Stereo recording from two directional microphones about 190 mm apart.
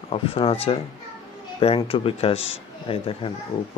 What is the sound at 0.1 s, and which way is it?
Speech, 30° left (ahead or behind).